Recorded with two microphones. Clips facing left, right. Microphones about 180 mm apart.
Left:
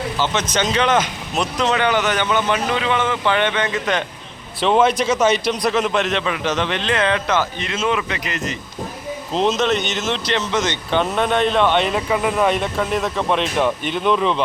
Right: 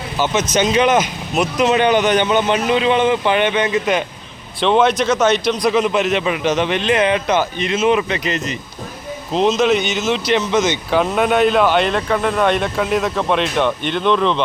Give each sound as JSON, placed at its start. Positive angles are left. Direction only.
{"t": 0.5, "sound": "speech", "side_deg": -15}
{"t": 4.6, "sound": "speech", "side_deg": 5}
{"t": 6.2, "sound": "speech", "side_deg": -15}
{"t": 9.3, "sound": "speech", "side_deg": 0}